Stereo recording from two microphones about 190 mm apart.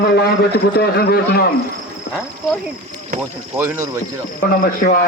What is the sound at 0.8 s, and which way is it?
Speech, 55° left (ahead or behind).